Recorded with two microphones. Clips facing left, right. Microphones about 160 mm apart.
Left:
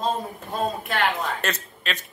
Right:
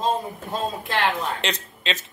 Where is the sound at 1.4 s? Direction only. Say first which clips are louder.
Right 1 dB; 20° right (ahead or behind).